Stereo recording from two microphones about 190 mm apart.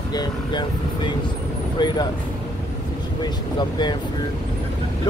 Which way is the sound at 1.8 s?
25° left (ahead or behind).